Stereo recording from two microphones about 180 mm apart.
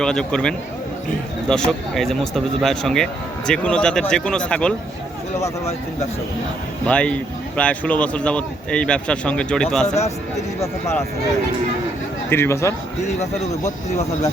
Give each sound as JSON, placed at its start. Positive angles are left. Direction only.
{"t": 0.0, "sound": "speech", "side_deg": 5}
{"t": 6.8, "sound": "speech", "side_deg": 5}
{"t": 9.8, "sound": "speech", "side_deg": 35}
{"t": 10.6, "sound": "speech", "side_deg": 15}
{"t": 12.3, "sound": "speech", "side_deg": 15}
{"t": 13.7, "sound": "speech", "side_deg": 40}